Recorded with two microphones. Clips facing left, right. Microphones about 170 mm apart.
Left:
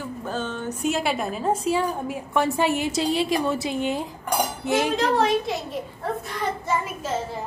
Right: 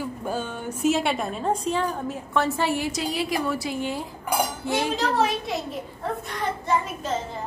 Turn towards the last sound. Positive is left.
turn(degrees=0)  # may be behind; listen again after turning